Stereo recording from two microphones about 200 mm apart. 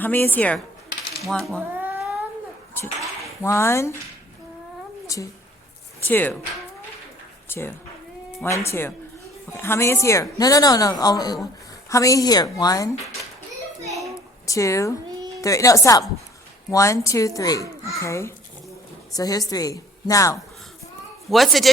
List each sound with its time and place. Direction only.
0.0 s a woman's voice: 10° left (ahead or behind)
3.4 s a woman's voice: 15° left (ahead or behind)
5.0 s a woman's voice: 15° left (ahead or behind)
7.4 s a sound: 10° left (ahead or behind)
8.4 s a woman's voice: 15° left (ahead or behind)
14.4 s a woman's voice: 15° left (ahead or behind)
21.2 s speech: centre (ahead or behind)